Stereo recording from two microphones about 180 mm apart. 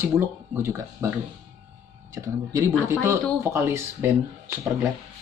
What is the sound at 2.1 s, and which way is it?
Speech, 15° right (ahead or behind).